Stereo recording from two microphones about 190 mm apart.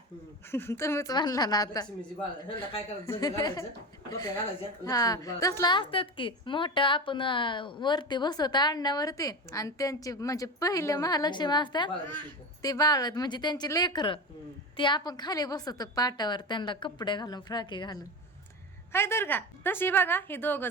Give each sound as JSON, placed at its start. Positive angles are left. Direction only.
{"t": 0.5, "sound": "a woman's voice", "side_deg": 15}
{"t": 3.1, "sound": "a woman's voice", "side_deg": 20}
{"t": 18.9, "sound": "a woman's voice", "side_deg": 10}